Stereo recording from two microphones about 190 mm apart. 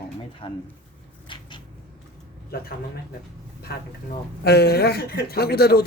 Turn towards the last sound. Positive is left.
turn(degrees=55)  # may be behind; listen again after turning